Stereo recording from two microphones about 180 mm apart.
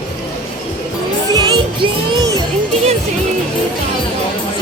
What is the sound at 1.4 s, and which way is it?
Music, 25° right (ahead or behind).